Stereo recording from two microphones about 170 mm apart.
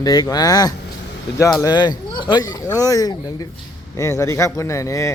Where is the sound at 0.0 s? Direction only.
20° left (ahead or behind).